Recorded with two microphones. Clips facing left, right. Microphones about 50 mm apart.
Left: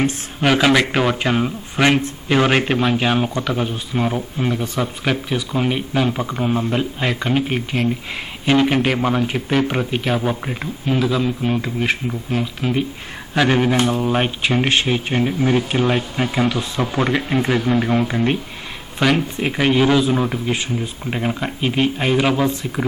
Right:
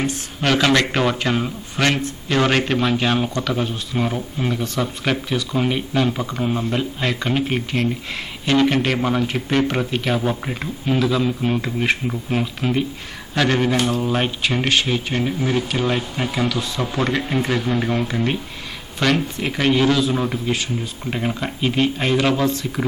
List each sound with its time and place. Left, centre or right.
0.4 s a man's voice: centre
13.3 s speech: centre
16.5 s speech: left; by 20.4 s centre
20.5 s speech: left
21.0 s speech: centre